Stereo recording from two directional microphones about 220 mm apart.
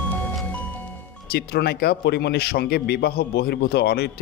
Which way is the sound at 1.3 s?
45° left (ahead or behind).